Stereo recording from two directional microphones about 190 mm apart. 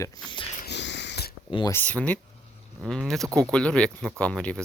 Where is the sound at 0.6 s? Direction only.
65° left (ahead or behind).